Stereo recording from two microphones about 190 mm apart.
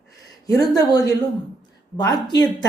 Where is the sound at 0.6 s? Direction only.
20° left (ahead or behind).